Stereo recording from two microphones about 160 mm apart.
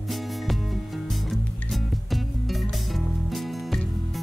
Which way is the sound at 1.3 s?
Centre (ahead or behind).